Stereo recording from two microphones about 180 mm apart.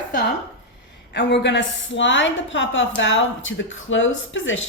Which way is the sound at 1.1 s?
70° left (ahead or behind).